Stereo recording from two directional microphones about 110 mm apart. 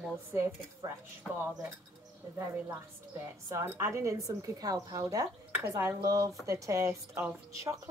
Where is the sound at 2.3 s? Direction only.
25° right (ahead or behind).